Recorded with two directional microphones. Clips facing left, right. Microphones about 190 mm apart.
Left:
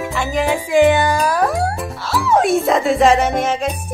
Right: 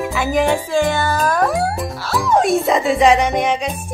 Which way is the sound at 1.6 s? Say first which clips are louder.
Right 1 dB; centre (ahead or behind).